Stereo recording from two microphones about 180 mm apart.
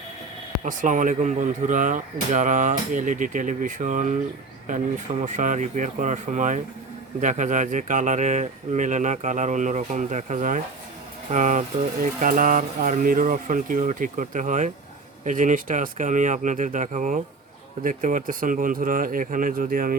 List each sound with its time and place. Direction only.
0.6 s speech: 45° right (ahead or behind)